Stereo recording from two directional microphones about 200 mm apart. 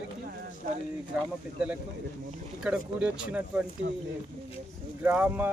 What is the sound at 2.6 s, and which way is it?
Speech, 5° right (ahead or behind).